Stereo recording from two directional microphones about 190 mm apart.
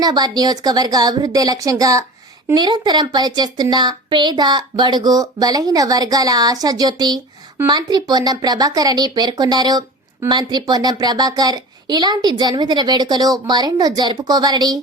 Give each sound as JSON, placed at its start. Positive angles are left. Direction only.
{"t": 0.0, "sound": "speech", "side_deg": -20}